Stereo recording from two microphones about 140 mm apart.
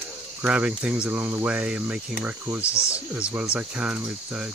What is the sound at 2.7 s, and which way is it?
Speech, 20° left (ahead or behind).